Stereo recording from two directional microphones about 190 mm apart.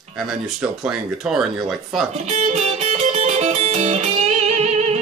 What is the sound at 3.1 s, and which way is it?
Music, 35° right (ahead or behind).